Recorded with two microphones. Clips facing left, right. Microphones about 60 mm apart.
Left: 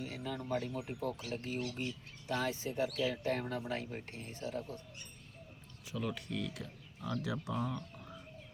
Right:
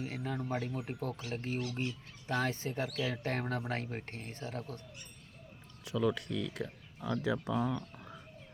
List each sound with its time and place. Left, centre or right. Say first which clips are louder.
0.0 s a sound: right 3 dB; right
0.6 s speech: right 2 dB; right
1.0 s speech: left 1 dB; right
5.8 s speech: right 7 dB; right
6.5 s speech: right 6 dB; right
7.5 s speech: right 4 dB; right
7.9 s a sound: right 1 dB; right